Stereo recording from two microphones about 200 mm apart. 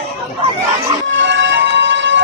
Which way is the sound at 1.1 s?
65° right (ahead or behind).